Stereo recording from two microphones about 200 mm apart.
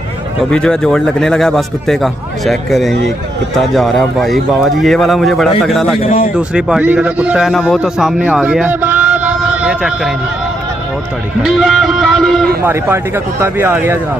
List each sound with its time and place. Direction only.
0.5 s a man's voice: 5° left (ahead or behind)
5.9 s speech: 40° left (ahead or behind)
6.3 s a man's voice: 5° right (ahead or behind)
11.4 s music: centre (ahead or behind)
12.6 s speech: 10° right (ahead or behind)